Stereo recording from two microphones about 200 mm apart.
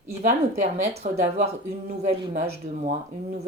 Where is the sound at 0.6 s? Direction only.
35° right (ahead or behind).